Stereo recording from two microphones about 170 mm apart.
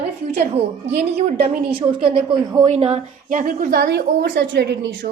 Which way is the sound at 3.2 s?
50° right (ahead or behind).